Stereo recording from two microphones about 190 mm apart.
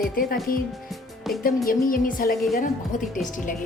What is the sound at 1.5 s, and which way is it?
Speech, 45° left (ahead or behind).